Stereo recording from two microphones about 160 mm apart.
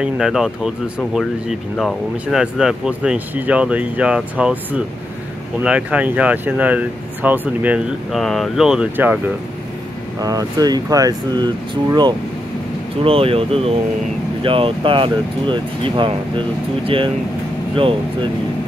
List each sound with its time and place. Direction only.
0.0 s speech: 5° right (ahead or behind)
10.2 s speech: 25° right (ahead or behind)